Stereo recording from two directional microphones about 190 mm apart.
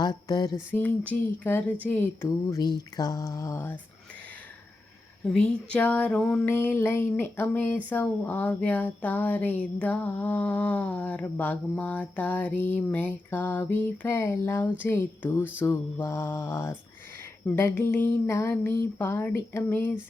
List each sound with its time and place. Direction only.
0.0 s speech: 20° left (ahead or behind)
5.2 s speech: 5° left (ahead or behind)